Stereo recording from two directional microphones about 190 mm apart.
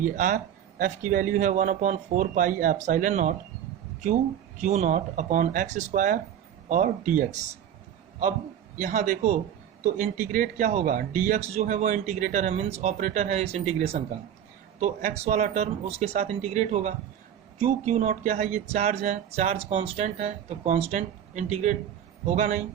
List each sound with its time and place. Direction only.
0.0 s a man's voice: 45° right (ahead or behind)
4.6 s speech: 35° right (ahead or behind)
8.8 s a man's voice: 45° right (ahead or behind)